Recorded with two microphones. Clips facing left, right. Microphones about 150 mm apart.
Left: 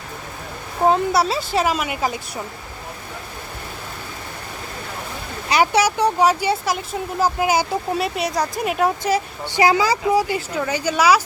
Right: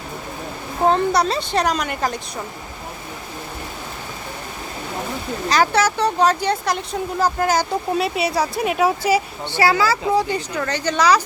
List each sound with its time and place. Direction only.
0.9 s a woman's voice: 5° left (ahead or behind)
5.5 s speech: 10° left (ahead or behind)
8.0 s a woman's voice: centre (ahead or behind)
9.4 s speech: 15° left (ahead or behind)